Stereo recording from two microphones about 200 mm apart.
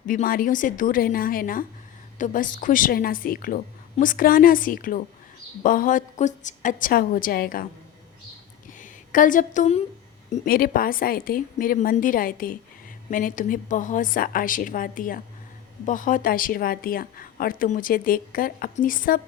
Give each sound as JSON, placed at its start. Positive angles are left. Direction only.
{"t": 0.0, "sound": "a woman's voice", "side_deg": 40}
{"t": 8.8, "sound": "a woman's voice", "side_deg": 40}
{"t": 10.3, "sound": "a woman's voice", "side_deg": 45}